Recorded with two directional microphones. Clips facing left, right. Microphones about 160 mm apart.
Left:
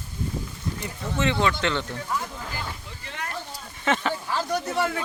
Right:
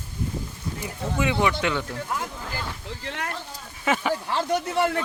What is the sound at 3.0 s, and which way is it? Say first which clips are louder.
Speech: right 3 dB; 75° right (ahead or behind).